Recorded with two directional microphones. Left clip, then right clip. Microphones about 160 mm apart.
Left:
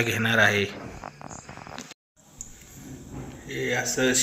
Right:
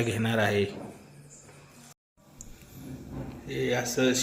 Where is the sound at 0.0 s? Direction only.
15° right (ahead or behind).